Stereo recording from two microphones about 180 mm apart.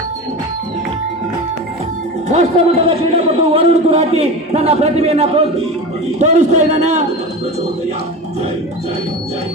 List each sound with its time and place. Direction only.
2.3 s a man's voice: 35° right (ahead or behind)